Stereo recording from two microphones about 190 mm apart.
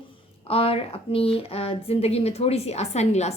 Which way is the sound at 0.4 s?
30° left (ahead or behind).